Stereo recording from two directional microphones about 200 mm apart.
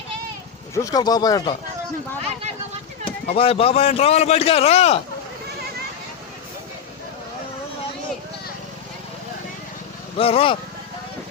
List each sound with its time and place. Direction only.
0.7 s a man's voice: 15° left (ahead or behind)
3.0 s a man's voice: 30° left (ahead or behind)
10.2 s a man's voice: 30° left (ahead or behind)